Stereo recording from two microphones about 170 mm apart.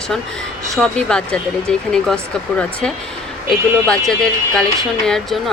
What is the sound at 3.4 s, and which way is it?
Speech, centre (ahead or behind).